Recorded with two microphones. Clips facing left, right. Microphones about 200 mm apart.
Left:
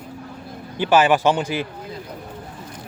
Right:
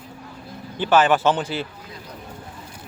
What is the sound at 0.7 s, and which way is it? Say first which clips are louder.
Speech: left 1 dB; 10° left (ahead or behind).